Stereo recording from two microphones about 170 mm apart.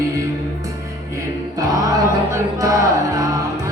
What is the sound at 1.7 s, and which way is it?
Music, 20° right (ahead or behind).